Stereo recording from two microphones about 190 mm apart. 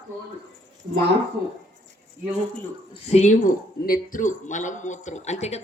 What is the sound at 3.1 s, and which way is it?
A man's voice, 40° left (ahead or behind).